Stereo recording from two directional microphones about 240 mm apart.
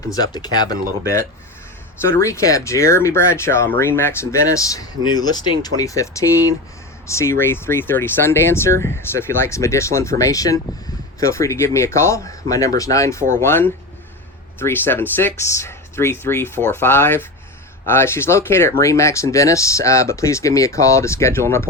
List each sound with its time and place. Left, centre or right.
0.1 s speech: centre